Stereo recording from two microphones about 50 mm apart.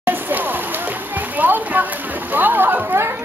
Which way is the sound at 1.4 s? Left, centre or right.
Right.